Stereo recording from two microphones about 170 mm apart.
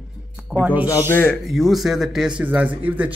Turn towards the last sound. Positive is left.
turn(degrees=-10)  # may be behind; listen again after turning